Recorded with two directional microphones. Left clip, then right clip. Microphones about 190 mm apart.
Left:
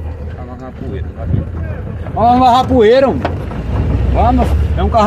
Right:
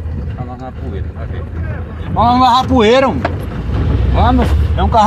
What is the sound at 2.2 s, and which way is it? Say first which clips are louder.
Speech: left 1 dB; 65° right (ahead or behind).